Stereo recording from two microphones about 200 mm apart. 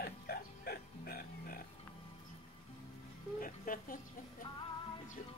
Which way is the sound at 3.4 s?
45° left (ahead or behind).